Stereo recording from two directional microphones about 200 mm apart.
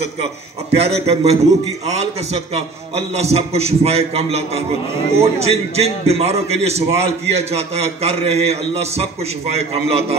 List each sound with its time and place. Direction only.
0.7 s a man's voice: 30° right (ahead or behind)